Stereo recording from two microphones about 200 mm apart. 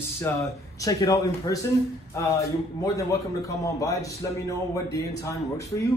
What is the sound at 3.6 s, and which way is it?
A man's voice, 15° left (ahead or behind).